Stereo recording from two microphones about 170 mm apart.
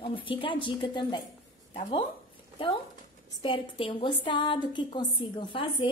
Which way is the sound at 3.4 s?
30° left (ahead or behind).